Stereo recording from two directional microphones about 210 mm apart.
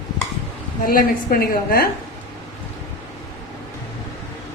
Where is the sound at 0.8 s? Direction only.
45° left (ahead or behind).